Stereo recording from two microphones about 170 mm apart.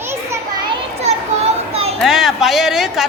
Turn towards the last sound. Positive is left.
turn(degrees=0)  # may be behind; listen again after turning